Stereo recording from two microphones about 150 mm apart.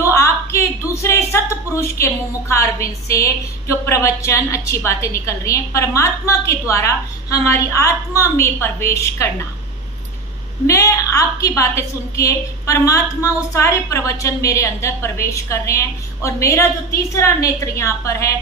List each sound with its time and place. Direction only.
0.0 s a woman's voice: 20° left (ahead or behind)
10.7 s a woman's voice: 20° left (ahead or behind)